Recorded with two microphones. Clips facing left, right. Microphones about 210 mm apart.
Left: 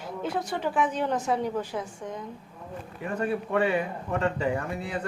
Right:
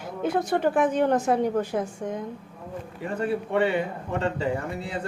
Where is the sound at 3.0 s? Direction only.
30° right (ahead or behind).